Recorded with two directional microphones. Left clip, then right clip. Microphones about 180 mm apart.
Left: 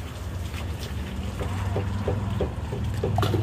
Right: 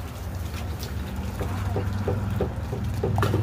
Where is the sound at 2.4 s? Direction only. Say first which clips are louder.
Even; 50° right (ahead or behind).